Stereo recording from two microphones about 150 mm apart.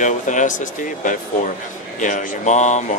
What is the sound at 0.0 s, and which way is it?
Speech, 55° left (ahead or behind).